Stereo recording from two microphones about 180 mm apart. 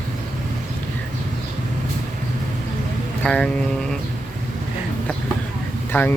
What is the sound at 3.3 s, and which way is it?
Speech, 5° left (ahead or behind).